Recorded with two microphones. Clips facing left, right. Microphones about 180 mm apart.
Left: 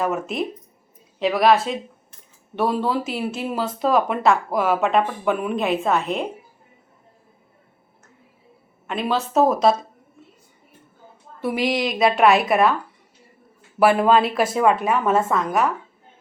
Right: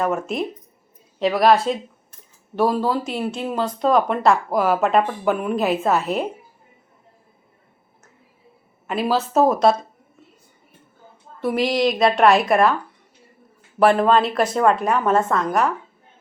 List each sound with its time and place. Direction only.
0.0 s speech: centre (ahead or behind)
8.9 s speech: 5° right (ahead or behind)
11.3 s speech: centre (ahead or behind)
13.7 s speech: 5° left (ahead or behind)